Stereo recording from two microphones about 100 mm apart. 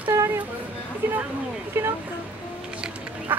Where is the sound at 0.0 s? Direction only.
25° right (ahead or behind).